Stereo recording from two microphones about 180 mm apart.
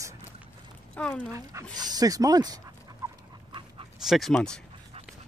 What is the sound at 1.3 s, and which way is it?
Speech, 20° right (ahead or behind).